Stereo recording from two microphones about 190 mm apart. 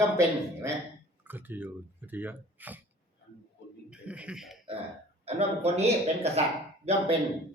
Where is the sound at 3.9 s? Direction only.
5° right (ahead or behind).